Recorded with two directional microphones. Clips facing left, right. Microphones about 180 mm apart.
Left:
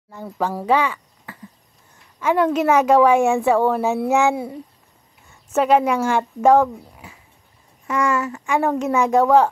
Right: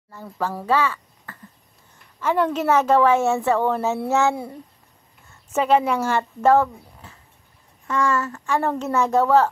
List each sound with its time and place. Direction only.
0.1 s speech: 15° left (ahead or behind)
5.6 s speech: 10° left (ahead or behind)